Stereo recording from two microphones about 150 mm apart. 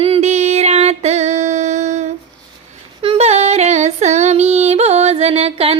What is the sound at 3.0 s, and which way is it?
Female singing, 45° right (ahead or behind).